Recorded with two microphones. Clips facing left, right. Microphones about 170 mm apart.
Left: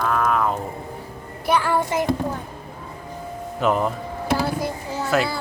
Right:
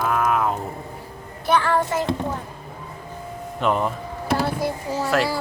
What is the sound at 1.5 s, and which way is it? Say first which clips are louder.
Music: right 1 dB; 10° left (ahead or behind).